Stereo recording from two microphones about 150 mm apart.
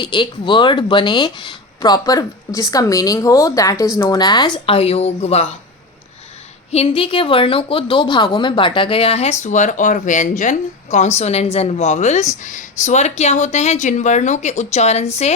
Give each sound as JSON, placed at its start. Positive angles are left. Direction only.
{"t": 0.0, "sound": "speech", "side_deg": 30}
{"t": 6.7, "sound": "a woman's voice", "side_deg": 40}